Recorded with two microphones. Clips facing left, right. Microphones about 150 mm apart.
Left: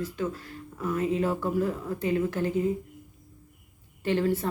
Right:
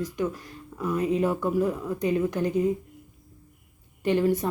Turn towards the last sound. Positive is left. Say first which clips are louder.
# right 3 dB
turn(degrees=-15)  # may be behind; listen again after turning